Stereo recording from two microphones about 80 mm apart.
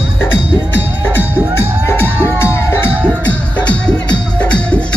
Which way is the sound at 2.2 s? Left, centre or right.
Left.